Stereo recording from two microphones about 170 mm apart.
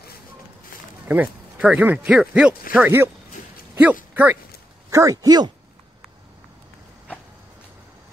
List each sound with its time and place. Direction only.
1.0 s speech: 10° right (ahead or behind)